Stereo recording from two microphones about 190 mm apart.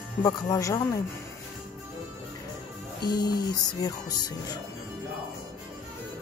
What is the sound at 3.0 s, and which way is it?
Music, 20° left (ahead or behind).